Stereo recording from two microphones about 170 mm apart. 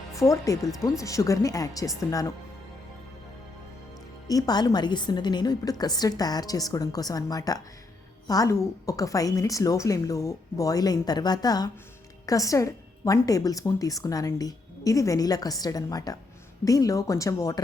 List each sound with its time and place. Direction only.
0.2 s a woman's voice: 20° left (ahead or behind)
4.3 s a woman's voice: 20° left (ahead or behind)